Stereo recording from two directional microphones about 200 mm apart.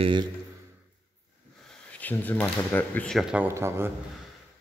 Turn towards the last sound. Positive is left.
turn(degrees=-10)  # may be behind; listen again after turning